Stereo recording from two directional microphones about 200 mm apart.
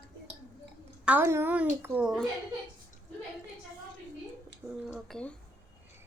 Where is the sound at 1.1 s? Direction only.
10° right (ahead or behind).